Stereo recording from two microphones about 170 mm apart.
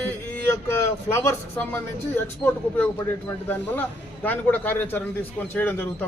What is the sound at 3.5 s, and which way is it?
A man's voice, 10° left (ahead or behind).